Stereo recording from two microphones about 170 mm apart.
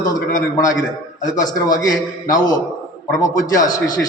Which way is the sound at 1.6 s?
20° left (ahead or behind).